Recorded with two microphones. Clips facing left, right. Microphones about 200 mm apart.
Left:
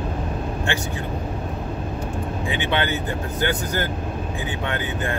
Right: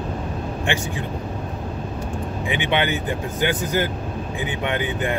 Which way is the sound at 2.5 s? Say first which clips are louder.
Right 2 dB; 15° right (ahead or behind).